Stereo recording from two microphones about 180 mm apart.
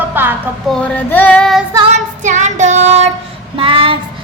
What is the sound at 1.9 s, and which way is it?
A woman's voice, 40° right (ahead or behind).